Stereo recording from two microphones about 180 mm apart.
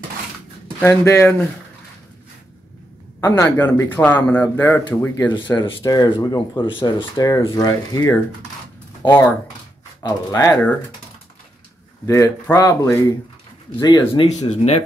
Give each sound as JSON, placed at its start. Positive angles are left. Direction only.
{"t": 0.7, "sound": "speech", "side_deg": 15}
{"t": 3.2, "sound": "speech", "side_deg": 15}
{"t": 12.1, "sound": "speech", "side_deg": 15}
{"t": 14.2, "sound": "speech", "side_deg": 35}